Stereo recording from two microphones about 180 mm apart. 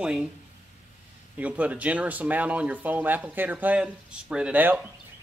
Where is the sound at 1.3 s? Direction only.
10° right (ahead or behind).